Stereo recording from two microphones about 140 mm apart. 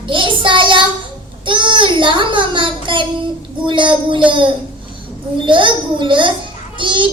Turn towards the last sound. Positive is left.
turn(degrees=-35)  # may be behind; listen again after turning